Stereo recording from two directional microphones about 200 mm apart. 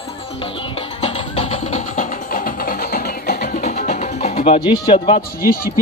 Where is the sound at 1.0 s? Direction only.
30° left (ahead or behind).